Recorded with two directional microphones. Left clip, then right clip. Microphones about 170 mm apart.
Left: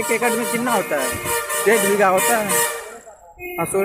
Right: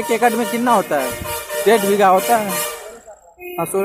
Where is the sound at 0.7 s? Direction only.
35° right (ahead or behind).